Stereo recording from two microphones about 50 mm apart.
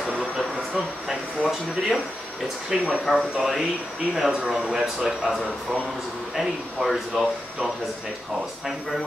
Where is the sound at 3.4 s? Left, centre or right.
Centre.